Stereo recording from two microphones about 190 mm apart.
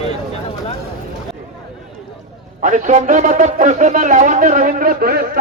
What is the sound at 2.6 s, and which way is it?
Speech, 40° right (ahead or behind).